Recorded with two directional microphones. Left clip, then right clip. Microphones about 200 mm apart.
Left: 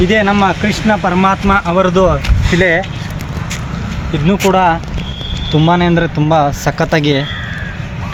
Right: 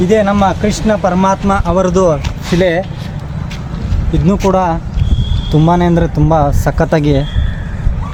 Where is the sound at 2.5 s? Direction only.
65° right (ahead or behind).